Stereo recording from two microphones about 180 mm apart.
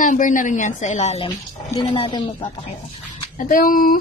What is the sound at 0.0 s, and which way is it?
A woman's voice, 45° left (ahead or behind).